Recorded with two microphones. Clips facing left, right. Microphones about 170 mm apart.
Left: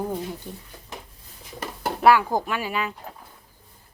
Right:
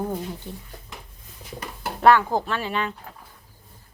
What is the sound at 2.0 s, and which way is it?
Speech, 10° left (ahead or behind).